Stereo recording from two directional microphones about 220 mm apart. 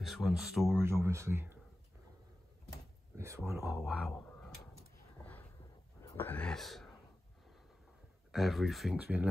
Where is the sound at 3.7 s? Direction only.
Centre (ahead or behind).